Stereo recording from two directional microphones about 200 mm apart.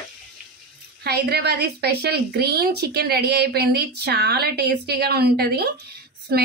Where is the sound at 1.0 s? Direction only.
55° right (ahead or behind).